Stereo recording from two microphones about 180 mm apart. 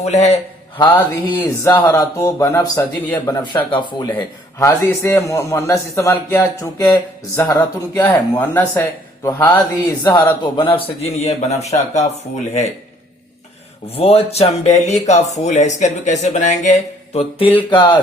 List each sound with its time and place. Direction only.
0.0 s speech: 35° left (ahead or behind)
0.8 s a man's voice: 20° left (ahead or behind)
4.6 s a man's voice: 15° left (ahead or behind); by 12.0 s 35° left (ahead or behind)
13.9 s speech: 35° left (ahead or behind)
17.2 s speech: 30° left (ahead or behind)